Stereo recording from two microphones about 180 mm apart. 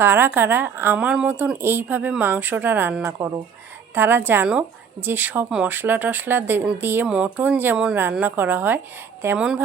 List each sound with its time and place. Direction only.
0.0 s speech: 10° right (ahead or behind)